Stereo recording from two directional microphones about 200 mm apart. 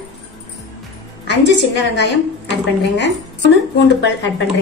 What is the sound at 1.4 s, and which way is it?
Speech, 60° left (ahead or behind).